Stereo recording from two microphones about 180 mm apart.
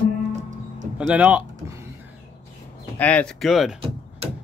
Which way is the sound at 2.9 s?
5° left (ahead or behind).